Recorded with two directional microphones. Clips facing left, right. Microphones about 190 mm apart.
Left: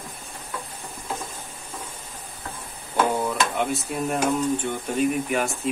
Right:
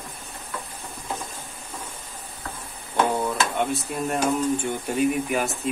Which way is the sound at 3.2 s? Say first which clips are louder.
Even; centre (ahead or behind).